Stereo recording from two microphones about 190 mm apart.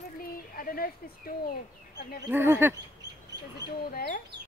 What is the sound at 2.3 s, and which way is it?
Speech, 10° right (ahead or behind).